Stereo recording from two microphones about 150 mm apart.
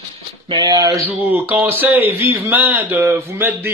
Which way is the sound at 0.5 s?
30° right (ahead or behind).